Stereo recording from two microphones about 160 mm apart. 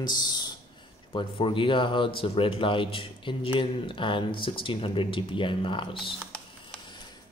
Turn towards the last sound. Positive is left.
turn(degrees=30)  # may be behind; listen again after turning